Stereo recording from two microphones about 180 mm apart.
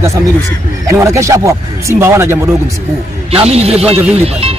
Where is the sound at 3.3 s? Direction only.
35° right (ahead or behind).